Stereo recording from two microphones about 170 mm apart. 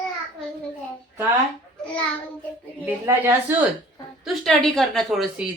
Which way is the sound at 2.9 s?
10° right (ahead or behind).